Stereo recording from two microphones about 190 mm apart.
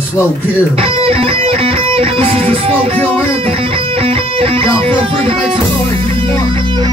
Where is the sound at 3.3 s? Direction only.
30° right (ahead or behind).